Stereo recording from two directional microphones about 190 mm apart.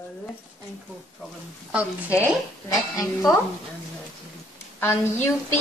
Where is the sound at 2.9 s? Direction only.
20° left (ahead or behind).